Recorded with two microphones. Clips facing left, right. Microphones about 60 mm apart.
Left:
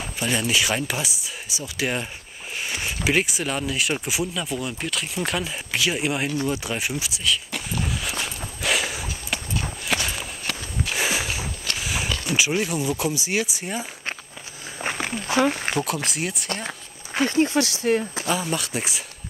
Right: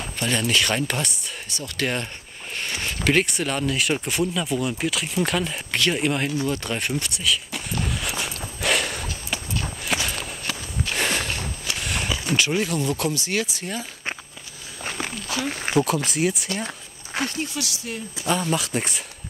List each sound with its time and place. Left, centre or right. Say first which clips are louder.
0.0 s speech: even; centre
6.4 s a sound: even; centre
9.9 s walk: even; centre
11.6 s a sound: even; centre
12.3 s speech: even; centre
14.8 s walk: left 3 dB; left
15.7 s speech: right 4 dB; centre
16.6 s a sound: left 1 dB; centre
17.3 s speech: left 9 dB; left
18.2 s speech: right 2 dB; centre